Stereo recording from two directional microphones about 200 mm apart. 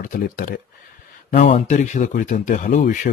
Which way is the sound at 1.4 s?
35° left (ahead or behind).